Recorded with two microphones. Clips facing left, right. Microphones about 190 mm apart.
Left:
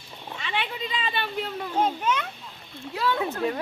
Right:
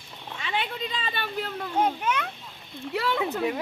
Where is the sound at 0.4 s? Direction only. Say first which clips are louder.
Right 1 dB; 45° right (ahead or behind).